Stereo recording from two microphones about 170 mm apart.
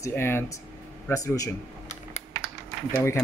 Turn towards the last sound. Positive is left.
turn(degrees=15)  # may be behind; listen again after turning